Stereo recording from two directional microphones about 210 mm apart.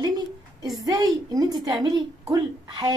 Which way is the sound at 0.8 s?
20° right (ahead or behind).